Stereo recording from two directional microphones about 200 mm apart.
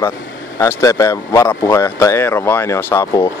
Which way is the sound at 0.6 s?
15° left (ahead or behind).